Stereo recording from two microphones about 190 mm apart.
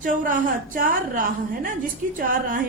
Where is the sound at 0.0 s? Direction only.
45° right (ahead or behind).